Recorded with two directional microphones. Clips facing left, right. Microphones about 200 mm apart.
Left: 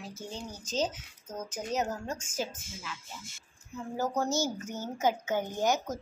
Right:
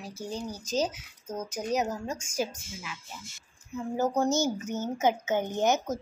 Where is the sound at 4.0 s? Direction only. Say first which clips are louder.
Right 4 dB; 20° right (ahead or behind).